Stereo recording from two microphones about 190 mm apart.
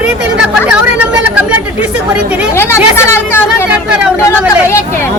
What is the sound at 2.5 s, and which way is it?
Speech, 15° left (ahead or behind).